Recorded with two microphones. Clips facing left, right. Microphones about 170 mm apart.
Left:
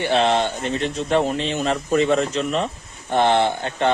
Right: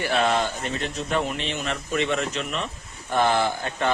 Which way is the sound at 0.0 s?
25° left (ahead or behind).